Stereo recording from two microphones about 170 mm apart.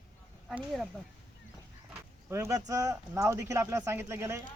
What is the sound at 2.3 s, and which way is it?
Speech, 15° right (ahead or behind).